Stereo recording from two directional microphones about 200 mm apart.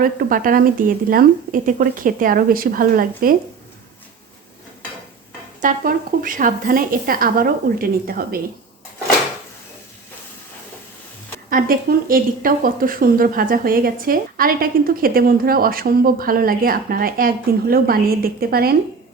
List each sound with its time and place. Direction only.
0.0 s a woman's voice: 45° right (ahead or behind)
5.6 s a woman's voice: 45° right (ahead or behind)
11.4 s a woman's voice: 45° right (ahead or behind)